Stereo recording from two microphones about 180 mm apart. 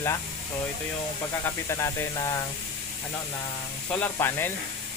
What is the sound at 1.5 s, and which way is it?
Speech, 15° left (ahead or behind).